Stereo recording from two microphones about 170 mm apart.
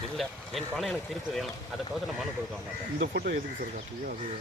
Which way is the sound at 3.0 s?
80° right.